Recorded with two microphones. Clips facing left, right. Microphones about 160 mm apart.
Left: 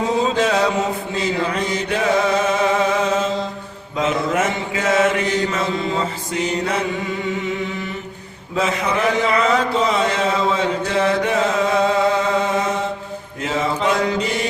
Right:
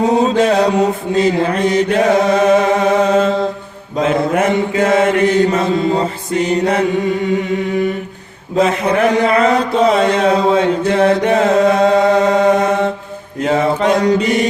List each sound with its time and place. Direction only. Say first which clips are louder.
0.1 s mantra: right 5 dB; 50° right (ahead or behind)
1.2 s chant: right 8 dB; 55° right (ahead or behind)
4.0 s mantra: right 5 dB; 55° right (ahead or behind)
8.5 s a sound: right 7 dB; 55° right (ahead or behind)
13.4 s mantra: right 7 dB; 55° right (ahead or behind)